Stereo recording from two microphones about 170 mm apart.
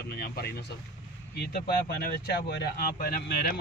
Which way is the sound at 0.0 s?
70° left (ahead or behind).